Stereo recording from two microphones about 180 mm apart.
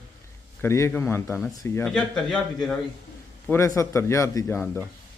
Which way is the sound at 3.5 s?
15° left (ahead or behind).